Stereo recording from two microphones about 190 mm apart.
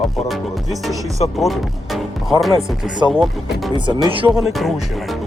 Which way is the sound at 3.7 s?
25° right (ahead or behind).